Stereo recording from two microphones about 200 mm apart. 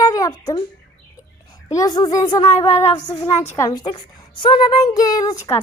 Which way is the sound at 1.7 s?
20° left (ahead or behind).